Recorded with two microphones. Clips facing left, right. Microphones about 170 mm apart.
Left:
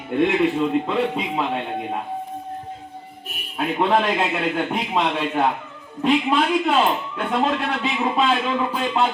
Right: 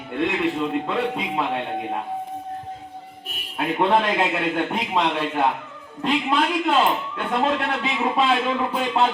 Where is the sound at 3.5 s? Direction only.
Centre (ahead or behind).